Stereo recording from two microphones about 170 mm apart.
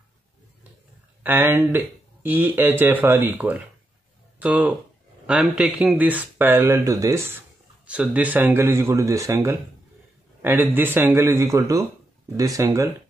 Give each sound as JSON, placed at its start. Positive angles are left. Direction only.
{"t": 1.2, "sound": "speech", "side_deg": -10}